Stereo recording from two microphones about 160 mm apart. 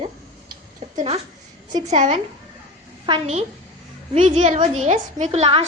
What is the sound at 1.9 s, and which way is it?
A woman's voice, 45° right (ahead or behind).